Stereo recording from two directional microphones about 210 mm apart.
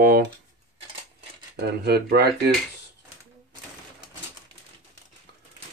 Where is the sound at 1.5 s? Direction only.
50° right (ahead or behind).